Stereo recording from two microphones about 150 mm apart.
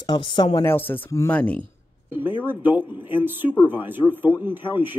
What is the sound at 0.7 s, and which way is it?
Speech, 15° left (ahead or behind).